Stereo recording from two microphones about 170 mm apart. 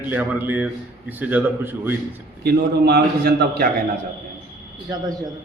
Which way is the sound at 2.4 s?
65° right (ahead or behind).